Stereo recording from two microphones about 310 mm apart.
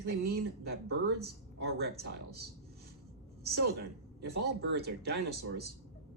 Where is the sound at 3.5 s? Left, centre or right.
Right.